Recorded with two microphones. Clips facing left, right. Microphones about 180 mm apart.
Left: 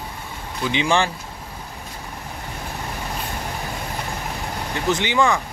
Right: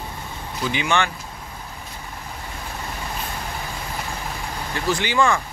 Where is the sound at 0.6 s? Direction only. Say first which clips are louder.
Left 2 dB; 25° left (ahead or behind).